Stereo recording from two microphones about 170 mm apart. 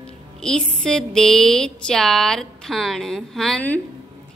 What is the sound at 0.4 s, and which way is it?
A woman's voice, 5° left (ahead or behind).